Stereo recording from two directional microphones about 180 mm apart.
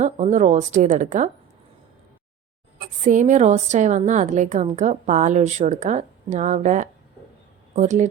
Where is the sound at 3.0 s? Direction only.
45° right (ahead or behind).